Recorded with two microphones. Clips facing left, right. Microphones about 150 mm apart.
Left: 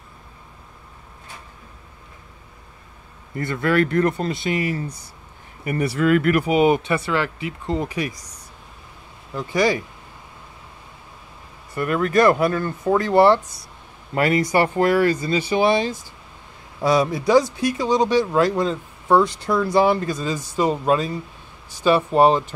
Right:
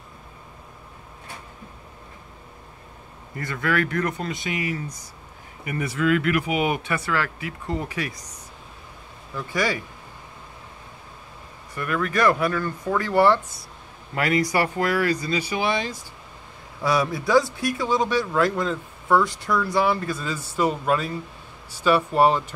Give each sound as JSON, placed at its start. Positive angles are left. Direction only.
{"t": 3.3, "sound": "speech", "side_deg": 30}
{"t": 9.3, "sound": "speech", "side_deg": 20}
{"t": 11.7, "sound": "speech", "side_deg": 30}